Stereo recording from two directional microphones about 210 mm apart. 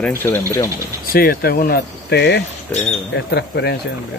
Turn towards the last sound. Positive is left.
turn(degrees=50)  # may be behind; listen again after turning